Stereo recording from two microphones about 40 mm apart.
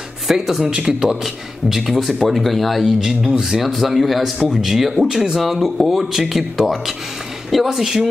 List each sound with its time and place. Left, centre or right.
0.3 s speech: centre
0.7 s speech: right
1.0 s a man's voice: centre
2.8 s speech: centre
3.7 s a man's voice: centre